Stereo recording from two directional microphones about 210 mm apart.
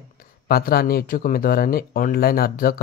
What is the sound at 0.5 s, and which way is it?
Speech, 45° left (ahead or behind).